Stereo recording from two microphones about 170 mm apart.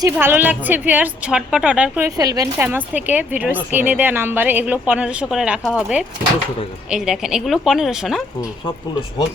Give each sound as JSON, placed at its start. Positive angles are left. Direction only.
{"t": 0.0, "sound": "speech", "side_deg": -15}
{"t": 2.0, "sound": "speech", "side_deg": -20}
{"t": 2.6, "sound": "speech", "side_deg": -10}